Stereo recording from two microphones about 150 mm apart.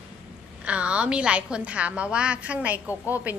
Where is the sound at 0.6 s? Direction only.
10° right (ahead or behind).